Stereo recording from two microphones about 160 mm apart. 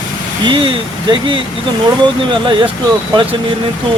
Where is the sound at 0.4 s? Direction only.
30° right (ahead or behind).